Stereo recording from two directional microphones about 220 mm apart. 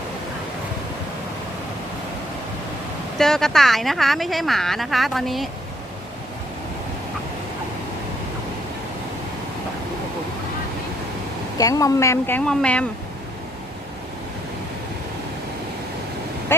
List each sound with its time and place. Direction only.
3.2 s speech: centre (ahead or behind)
11.5 s speech: 15° left (ahead or behind)